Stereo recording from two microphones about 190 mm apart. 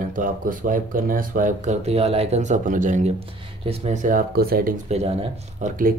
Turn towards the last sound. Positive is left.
turn(degrees=-50)  # may be behind; listen again after turning